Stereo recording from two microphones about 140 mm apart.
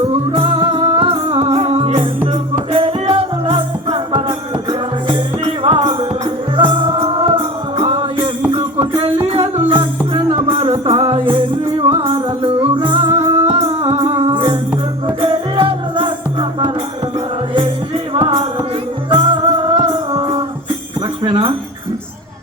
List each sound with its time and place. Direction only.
0.3 s music: 40° right (ahead or behind)
5.6 s music: 35° right (ahead or behind)
18.1 s music: 35° right (ahead or behind)
21.2 s jingle bell: 35° right (ahead or behind)